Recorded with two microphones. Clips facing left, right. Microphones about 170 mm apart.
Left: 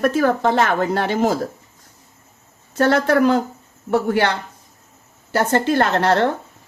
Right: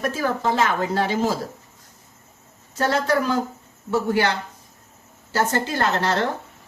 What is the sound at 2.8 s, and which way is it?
Speech, 60° left (ahead or behind).